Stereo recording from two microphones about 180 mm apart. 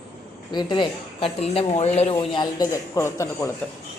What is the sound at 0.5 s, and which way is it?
A woman's voice, 25° left (ahead or behind).